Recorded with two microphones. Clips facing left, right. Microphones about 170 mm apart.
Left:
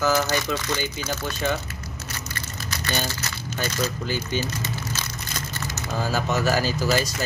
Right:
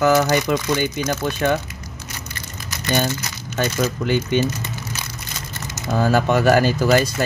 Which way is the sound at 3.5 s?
65° right (ahead or behind).